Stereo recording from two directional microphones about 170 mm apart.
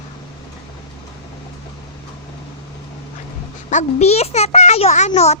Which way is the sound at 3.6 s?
40° left (ahead or behind).